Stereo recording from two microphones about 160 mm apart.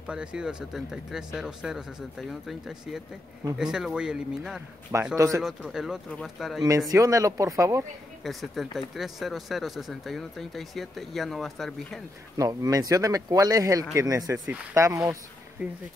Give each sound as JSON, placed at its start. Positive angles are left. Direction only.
{"t": 0.0, "sound": "speech", "side_deg": -5}
{"t": 5.1, "sound": "speech", "side_deg": -20}
{"t": 5.4, "sound": "speech", "side_deg": 0}
{"t": 6.9, "sound": "speech", "side_deg": -20}
{"t": 8.2, "sound": "speech", "side_deg": 0}
{"t": 12.4, "sound": "speech", "side_deg": -25}